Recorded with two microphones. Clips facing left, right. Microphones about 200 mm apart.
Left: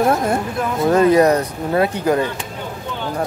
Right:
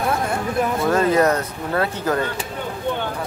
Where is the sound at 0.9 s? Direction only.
15° left (ahead or behind).